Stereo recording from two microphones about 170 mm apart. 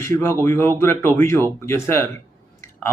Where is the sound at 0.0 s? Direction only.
15° left (ahead or behind).